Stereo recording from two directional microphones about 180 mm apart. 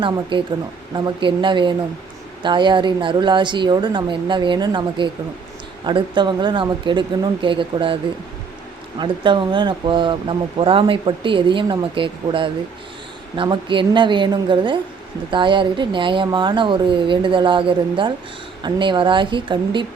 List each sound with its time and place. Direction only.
0.0 s speech: 25° right (ahead or behind)
9.0 s speech: 25° right (ahead or behind)